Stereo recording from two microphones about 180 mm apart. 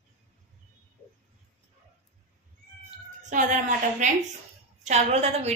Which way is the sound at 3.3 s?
45° right (ahead or behind).